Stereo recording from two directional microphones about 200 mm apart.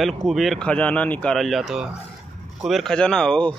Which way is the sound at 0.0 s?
Centre (ahead or behind).